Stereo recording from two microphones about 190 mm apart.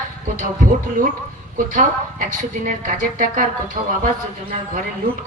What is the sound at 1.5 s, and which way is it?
A woman's voice, 45° right (ahead or behind).